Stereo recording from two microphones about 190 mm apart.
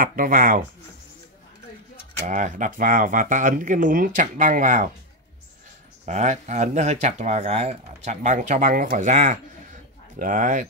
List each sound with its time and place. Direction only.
0.0 s speech: 45° right (ahead or behind)
2.2 s speech: 40° right (ahead or behind)
6.0 s speech: 35° right (ahead or behind)